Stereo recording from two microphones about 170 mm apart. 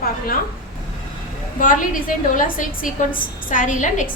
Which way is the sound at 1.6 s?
50° left (ahead or behind).